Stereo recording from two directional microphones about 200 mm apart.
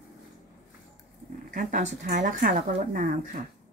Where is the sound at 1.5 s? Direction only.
40° right (ahead or behind).